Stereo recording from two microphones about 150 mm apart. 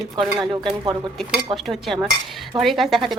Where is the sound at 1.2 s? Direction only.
Centre (ahead or behind).